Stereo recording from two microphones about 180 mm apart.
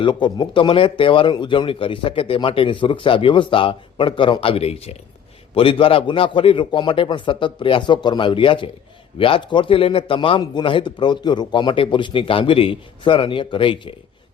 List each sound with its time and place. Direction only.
0.0 s speech: 25° left (ahead or behind)